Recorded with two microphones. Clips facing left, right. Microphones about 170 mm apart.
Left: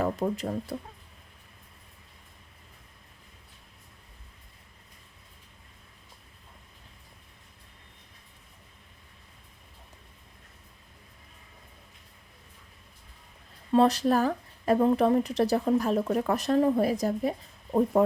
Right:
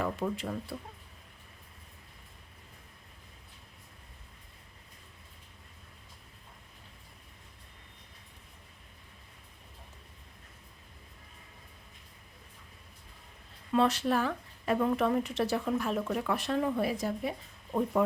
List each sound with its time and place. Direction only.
0.0 s speech: 40° left (ahead or behind)
13.7 s speech: 35° left (ahead or behind)